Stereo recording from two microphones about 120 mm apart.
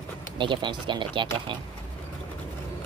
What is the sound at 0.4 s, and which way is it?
Speech, 40° right (ahead or behind).